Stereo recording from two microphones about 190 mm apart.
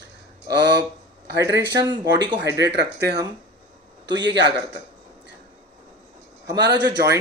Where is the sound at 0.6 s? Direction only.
60° right (ahead or behind).